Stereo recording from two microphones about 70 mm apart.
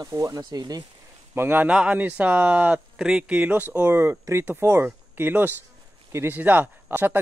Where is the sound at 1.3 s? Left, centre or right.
Right.